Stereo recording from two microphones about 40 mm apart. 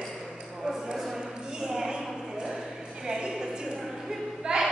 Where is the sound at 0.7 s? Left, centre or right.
Centre.